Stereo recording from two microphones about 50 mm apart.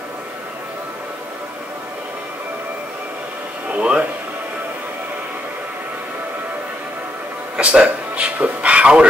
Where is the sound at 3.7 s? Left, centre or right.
Right.